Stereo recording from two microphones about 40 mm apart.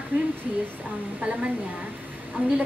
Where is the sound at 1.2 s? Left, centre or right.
Right.